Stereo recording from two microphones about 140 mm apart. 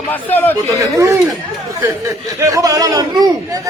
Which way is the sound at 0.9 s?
20° right (ahead or behind).